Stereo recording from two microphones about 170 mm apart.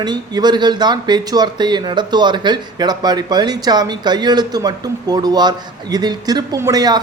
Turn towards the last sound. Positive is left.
turn(degrees=-20)  # may be behind; listen again after turning